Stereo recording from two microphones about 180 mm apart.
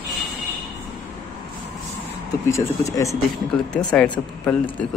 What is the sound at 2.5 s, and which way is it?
Speech, 15° left (ahead or behind).